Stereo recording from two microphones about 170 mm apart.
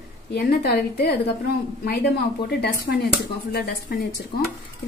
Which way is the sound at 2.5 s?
70° left (ahead or behind).